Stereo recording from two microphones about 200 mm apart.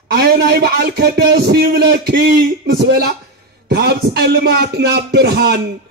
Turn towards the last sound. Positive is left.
turn(degrees=-55)  # may be behind; listen again after turning